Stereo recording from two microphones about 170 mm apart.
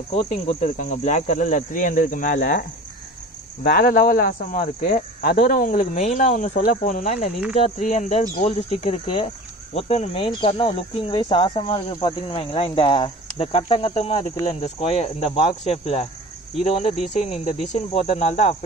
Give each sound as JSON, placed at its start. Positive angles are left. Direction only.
{"t": 0.1, "sound": "speech", "side_deg": 45}
{"t": 3.6, "sound": "speech", "side_deg": 55}